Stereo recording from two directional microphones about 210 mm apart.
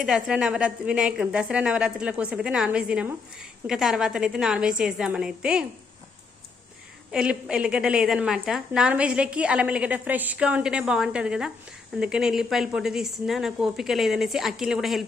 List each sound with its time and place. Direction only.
0.0 s a woman's voice: 5° right (ahead or behind)
7.1 s a woman's voice: 5° right (ahead or behind)